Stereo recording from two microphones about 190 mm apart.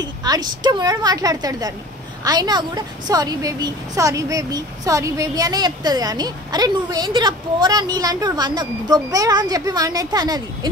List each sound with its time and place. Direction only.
0.0 s a woman's voice: 20° right (ahead or behind)